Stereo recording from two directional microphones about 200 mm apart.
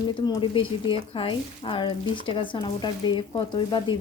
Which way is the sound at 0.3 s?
25° left (ahead or behind).